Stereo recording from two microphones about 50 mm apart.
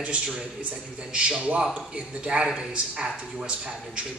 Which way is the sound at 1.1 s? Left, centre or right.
Right.